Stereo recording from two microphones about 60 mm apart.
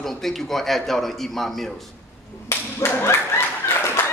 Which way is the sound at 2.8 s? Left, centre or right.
Left.